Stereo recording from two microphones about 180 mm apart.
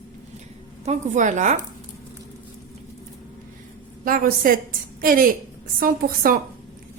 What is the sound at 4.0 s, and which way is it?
Speech, 50° right (ahead or behind).